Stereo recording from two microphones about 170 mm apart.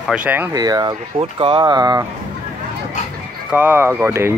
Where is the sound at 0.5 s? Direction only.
20° right (ahead or behind).